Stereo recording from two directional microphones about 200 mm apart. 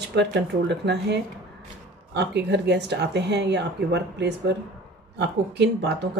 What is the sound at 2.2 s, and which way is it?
A woman's voice, 55° right (ahead or behind).